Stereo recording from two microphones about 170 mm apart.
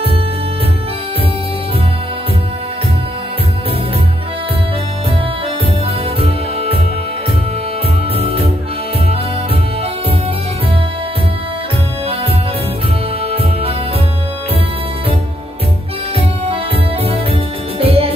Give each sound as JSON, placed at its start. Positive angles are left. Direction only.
{"t": 6.2, "sound": "music", "side_deg": -35}
{"t": 13.3, "sound": "music", "side_deg": -35}
{"t": 16.2, "sound": "music", "side_deg": -35}